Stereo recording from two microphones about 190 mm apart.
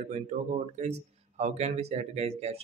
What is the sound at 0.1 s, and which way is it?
Speech, 40° right (ahead or behind).